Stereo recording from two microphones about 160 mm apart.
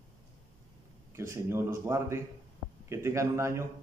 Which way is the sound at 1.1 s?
15° right (ahead or behind).